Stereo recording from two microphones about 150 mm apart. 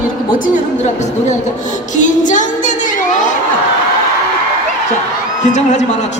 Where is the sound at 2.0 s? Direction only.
55° left (ahead or behind).